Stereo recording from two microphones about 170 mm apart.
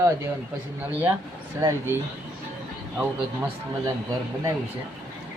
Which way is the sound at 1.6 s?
15° right (ahead or behind).